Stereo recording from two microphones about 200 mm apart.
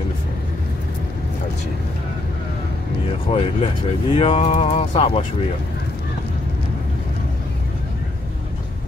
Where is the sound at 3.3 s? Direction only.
30° left (ahead or behind).